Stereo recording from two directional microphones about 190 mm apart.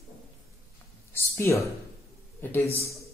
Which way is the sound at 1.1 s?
10° left (ahead or behind).